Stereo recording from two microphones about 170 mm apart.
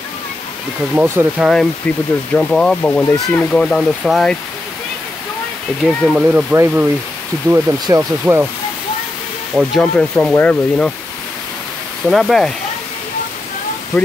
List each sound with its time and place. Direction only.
0.9 s speech: 15° right (ahead or behind)
1.4 s speech: centre (ahead or behind)
5.9 s speech: 5° left (ahead or behind)
6.1 s speech: 10° right (ahead or behind)
9.6 s speech: centre (ahead or behind)
12.1 s speech: centre (ahead or behind)
13.9 s speech: 15° left (ahead or behind)